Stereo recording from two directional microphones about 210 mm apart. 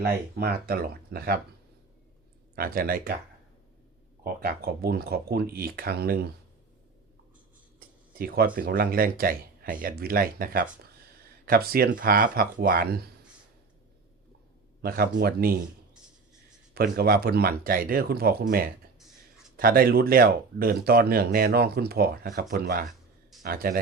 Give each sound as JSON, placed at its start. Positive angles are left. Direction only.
{"t": 0.0, "sound": "speech", "side_deg": -45}
{"t": 2.6, "sound": "speech", "side_deg": -45}
{"t": 4.2, "sound": "speech", "side_deg": -45}
{"t": 8.5, "sound": "speech", "side_deg": -45}
{"t": 14.8, "sound": "speech", "side_deg": -45}
{"t": 16.7, "sound": "speech", "side_deg": -45}
{"t": 18.9, "sound": "a sound", "side_deg": 0}
{"t": 19.5, "sound": "speech", "side_deg": -45}